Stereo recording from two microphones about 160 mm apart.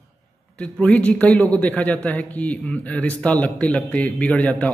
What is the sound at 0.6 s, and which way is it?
A man's voice, 5° left (ahead or behind).